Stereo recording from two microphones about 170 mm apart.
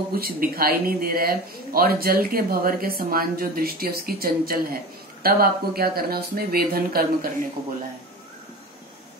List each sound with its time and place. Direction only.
0.1 s speech: 60° right (ahead or behind)